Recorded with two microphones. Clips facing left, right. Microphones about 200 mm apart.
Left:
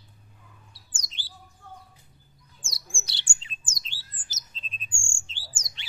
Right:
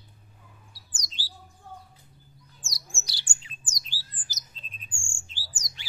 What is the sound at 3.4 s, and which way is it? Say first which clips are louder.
Bird: left 1 dB; 25° left (ahead or behind).